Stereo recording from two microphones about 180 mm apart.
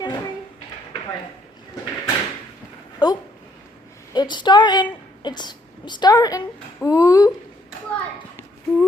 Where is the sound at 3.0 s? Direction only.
25° left (ahead or behind).